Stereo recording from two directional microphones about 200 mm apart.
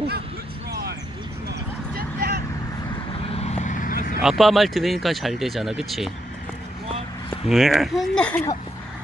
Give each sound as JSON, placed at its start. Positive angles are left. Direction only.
{"t": 2.0, "sound": "vehicle", "side_deg": -50}
{"t": 3.3, "sound": "vehicle", "side_deg": 35}
{"t": 4.2, "sound": "speech", "side_deg": 0}
{"t": 7.4, "sound": "speech", "side_deg": 0}